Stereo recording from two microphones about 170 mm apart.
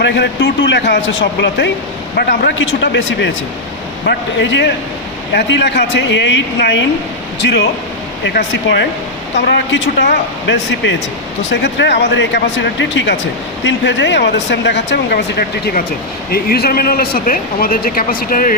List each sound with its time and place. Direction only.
0.0 s speech: 90° left
2.1 s speech: 70° left (ahead or behind)